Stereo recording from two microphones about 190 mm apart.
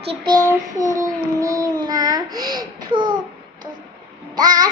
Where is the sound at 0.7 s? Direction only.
20° right (ahead or behind).